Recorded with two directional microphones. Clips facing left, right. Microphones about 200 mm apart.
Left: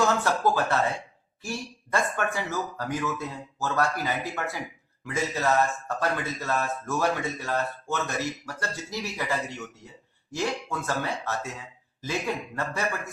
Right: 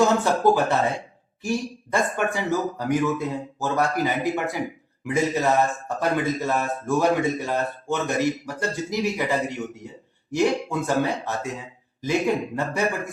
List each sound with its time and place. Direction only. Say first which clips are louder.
0.0 s speech: right 5 dB; 15° right (ahead or behind)